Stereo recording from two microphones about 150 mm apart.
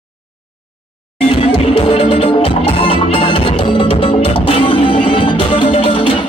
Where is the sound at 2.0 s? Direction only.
40° left (ahead or behind).